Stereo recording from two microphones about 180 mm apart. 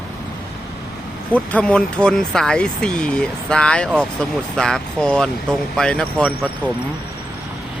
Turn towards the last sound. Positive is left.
turn(degrees=5)  # may be behind; listen again after turning